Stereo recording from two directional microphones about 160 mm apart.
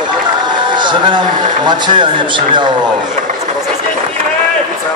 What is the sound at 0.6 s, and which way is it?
A man's voice, 30° right (ahead or behind).